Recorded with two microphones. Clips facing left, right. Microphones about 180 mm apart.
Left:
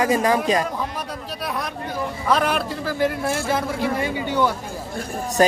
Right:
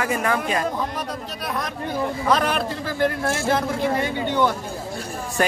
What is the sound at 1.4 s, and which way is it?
A man's voice, 10° left (ahead or behind).